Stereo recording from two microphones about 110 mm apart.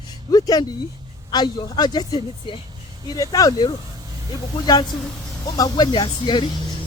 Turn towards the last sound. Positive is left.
turn(degrees=45)  # may be behind; listen again after turning